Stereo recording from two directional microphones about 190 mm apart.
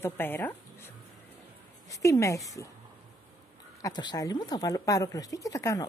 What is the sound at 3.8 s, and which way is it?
A woman's voice, 20° left (ahead or behind).